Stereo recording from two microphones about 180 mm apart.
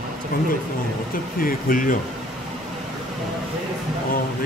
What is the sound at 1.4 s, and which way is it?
Speech, 50° left (ahead or behind).